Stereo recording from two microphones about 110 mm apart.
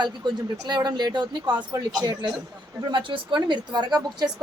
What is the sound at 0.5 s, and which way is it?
Speech, 40° right (ahead or behind).